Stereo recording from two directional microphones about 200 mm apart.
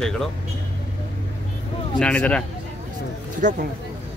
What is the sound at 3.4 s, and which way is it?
Speech, 40° right (ahead or behind).